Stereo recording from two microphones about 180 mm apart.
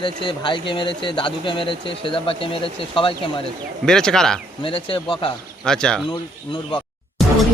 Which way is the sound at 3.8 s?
5° left (ahead or behind).